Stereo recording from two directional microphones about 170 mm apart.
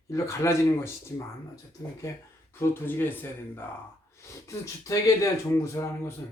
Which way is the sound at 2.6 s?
10° left (ahead or behind).